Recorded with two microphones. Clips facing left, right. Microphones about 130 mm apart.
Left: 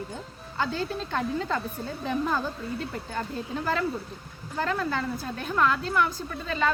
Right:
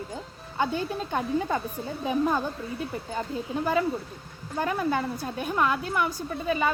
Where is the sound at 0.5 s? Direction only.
15° right (ahead or behind).